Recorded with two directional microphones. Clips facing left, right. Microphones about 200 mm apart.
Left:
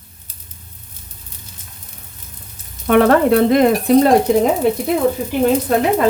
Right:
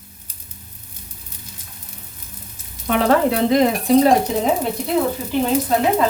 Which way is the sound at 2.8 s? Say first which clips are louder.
Left 5 dB; 55° left (ahead or behind).